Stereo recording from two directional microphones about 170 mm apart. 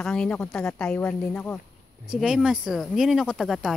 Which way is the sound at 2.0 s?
5° right (ahead or behind).